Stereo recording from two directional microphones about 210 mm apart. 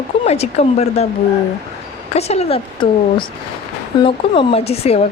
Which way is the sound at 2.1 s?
30° left (ahead or behind).